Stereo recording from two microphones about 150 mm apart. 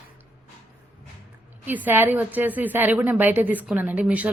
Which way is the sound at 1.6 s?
10° right (ahead or behind).